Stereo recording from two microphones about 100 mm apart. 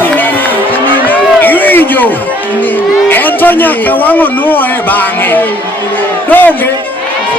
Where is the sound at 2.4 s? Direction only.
20° left (ahead or behind).